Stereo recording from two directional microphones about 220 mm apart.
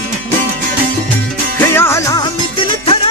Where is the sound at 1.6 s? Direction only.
10° left (ahead or behind).